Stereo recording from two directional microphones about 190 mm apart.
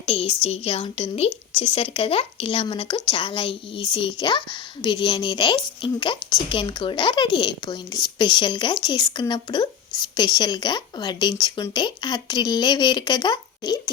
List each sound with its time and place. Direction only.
0.0 s a woman's voice: 30° left (ahead or behind)